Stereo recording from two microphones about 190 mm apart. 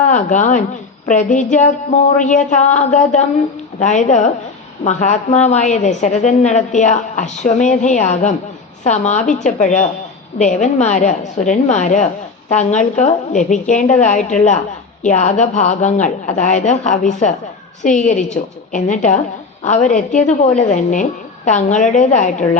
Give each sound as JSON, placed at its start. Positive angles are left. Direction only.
{"t": 0.0, "sound": "a woman's voice", "side_deg": 40}